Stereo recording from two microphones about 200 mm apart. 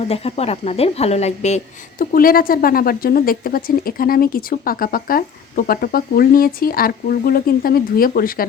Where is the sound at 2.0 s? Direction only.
45° left (ahead or behind).